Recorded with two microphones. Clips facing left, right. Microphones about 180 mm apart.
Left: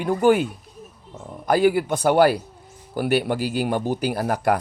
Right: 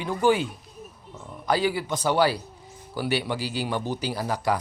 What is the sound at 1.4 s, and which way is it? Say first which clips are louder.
Speech: left 6 dB; 50° left (ahead or behind).